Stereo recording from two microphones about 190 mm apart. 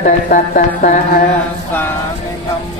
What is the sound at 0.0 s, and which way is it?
Speech, 45° left (ahead or behind).